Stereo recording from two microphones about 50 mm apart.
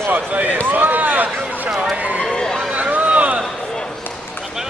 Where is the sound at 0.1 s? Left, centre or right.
Right.